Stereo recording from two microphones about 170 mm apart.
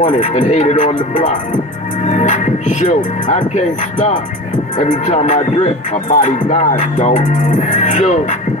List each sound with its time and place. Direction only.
0.0 s music: 45° left (ahead or behind)